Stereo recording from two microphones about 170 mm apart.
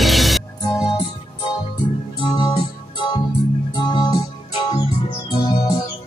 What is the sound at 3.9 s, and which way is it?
Music, 25° left (ahead or behind).